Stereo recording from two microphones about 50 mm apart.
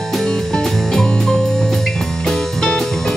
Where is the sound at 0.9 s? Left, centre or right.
Centre.